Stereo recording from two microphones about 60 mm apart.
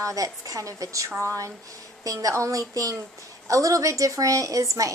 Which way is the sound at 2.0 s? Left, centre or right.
Right.